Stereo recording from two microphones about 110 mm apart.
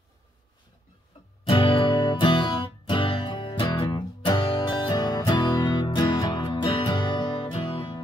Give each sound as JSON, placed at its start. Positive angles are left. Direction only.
{"t": 1.4, "sound": "music", "side_deg": 55}
{"t": 4.9, "sound": "music", "side_deg": 40}